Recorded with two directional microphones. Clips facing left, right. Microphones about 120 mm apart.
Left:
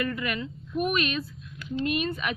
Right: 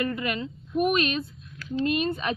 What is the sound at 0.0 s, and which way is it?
Speech, 25° right (ahead or behind).